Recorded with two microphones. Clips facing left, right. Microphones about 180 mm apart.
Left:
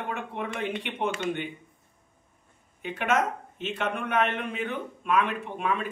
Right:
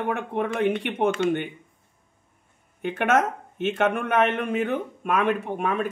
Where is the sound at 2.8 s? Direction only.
50° right (ahead or behind).